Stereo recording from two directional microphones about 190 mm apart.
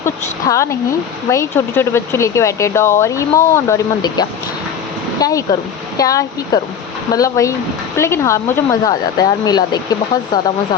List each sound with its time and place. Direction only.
0.0 s speech: 15° left (ahead or behind)